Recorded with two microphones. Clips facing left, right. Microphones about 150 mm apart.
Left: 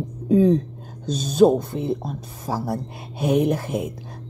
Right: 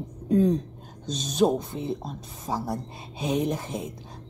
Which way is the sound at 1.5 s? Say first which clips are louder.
Left 6 dB; 55° left (ahead or behind).